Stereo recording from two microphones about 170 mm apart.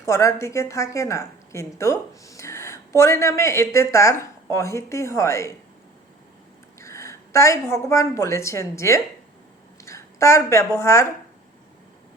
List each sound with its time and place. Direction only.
0.0 s a woman's voice: 15° left (ahead or behind)
6.7 s a woman's voice: 15° left (ahead or behind)